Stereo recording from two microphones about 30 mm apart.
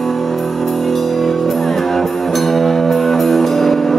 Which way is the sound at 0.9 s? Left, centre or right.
Centre.